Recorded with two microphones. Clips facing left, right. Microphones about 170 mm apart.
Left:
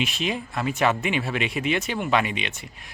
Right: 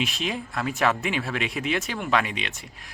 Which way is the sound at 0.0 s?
Centre (ahead or behind).